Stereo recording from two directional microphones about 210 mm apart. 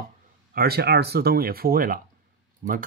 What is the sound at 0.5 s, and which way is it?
Speech, 50° right (ahead or behind).